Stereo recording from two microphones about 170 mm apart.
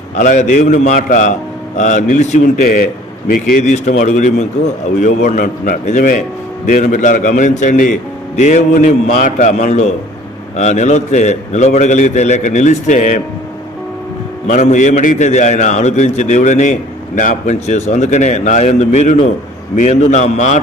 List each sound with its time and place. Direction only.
0.2 s a man's voice: 45° left (ahead or behind)
14.5 s a man's voice: 45° left (ahead or behind)